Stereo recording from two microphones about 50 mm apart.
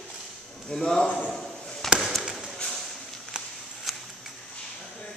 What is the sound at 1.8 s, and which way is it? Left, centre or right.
Chop, centre.